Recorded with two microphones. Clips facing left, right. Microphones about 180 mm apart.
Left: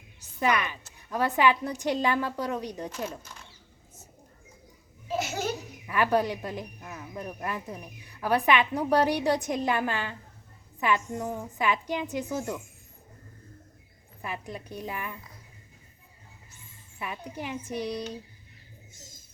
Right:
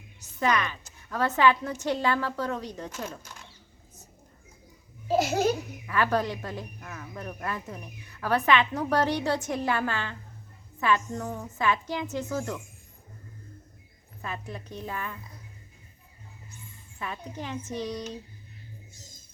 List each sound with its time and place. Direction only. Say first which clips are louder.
0.3 s a woman's voice: even; 15° left (ahead or behind)
5.0 s laughter: right 6 dB; 35° right (ahead or behind)
5.8 s a woman's voice: left 2 dB; 15° left (ahead or behind)
14.2 s speech: even; 15° left (ahead or behind)
17.0 s speech: even; 10° left (ahead or behind)